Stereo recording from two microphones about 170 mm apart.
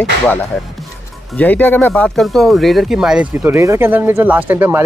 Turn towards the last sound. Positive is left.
turn(degrees=-10)  # may be behind; listen again after turning